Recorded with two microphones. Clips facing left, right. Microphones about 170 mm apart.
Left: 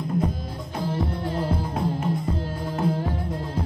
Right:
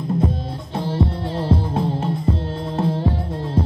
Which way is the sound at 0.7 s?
30° right (ahead or behind).